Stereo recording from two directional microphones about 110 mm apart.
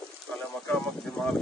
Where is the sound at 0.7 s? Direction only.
5° left (ahead or behind).